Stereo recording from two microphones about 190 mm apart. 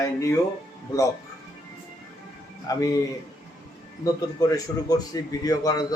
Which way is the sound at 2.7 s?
20° left (ahead or behind).